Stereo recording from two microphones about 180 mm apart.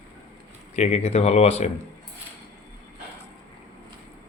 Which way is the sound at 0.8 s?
40° left (ahead or behind).